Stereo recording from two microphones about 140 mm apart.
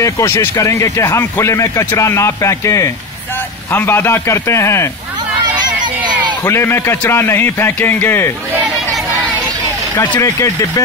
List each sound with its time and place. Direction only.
0.0 s speech: 20° left (ahead or behind)
6.4 s a man's voice: 20° left (ahead or behind)
10.1 s speech: 20° left (ahead or behind)